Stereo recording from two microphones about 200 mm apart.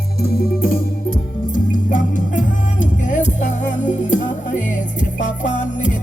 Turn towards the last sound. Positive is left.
turn(degrees=40)  # may be behind; listen again after turning